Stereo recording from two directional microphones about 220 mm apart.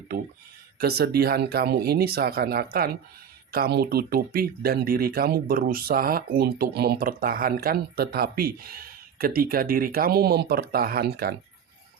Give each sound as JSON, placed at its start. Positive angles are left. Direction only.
{"t": 0.8, "sound": "speech", "side_deg": -45}